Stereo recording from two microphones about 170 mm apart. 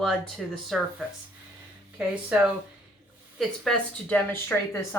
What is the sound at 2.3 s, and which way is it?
Speech, 5° right (ahead or behind).